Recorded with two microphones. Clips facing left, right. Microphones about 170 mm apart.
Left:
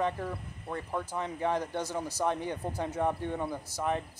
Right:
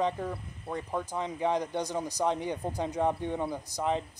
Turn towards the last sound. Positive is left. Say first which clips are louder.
# right 2 dB
turn(degrees=-15)  # may be behind; listen again after turning